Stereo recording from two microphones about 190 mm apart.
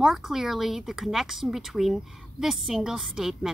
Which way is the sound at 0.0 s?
Centre (ahead or behind).